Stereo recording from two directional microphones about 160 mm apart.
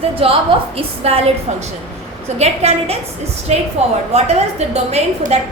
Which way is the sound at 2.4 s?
40° right (ahead or behind).